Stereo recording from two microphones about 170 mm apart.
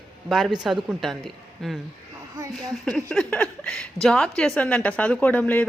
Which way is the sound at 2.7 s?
5° left (ahead or behind).